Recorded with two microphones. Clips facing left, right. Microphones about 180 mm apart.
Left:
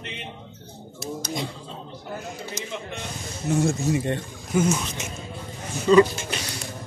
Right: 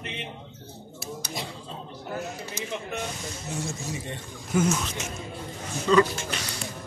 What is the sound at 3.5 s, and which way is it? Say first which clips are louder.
Speech: left 12 dB; 60° left (ahead or behind).